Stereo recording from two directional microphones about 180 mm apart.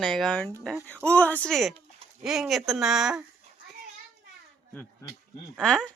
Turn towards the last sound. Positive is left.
turn(degrees=5)  # may be behind; listen again after turning